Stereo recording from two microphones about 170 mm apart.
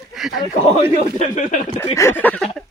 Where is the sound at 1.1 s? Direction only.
45° left (ahead or behind).